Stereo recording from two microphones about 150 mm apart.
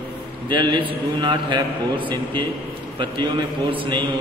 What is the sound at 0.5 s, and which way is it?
A man's voice, 30° right (ahead or behind).